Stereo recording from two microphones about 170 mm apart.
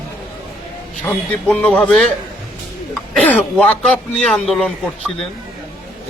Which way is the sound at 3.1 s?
10° left (ahead or behind).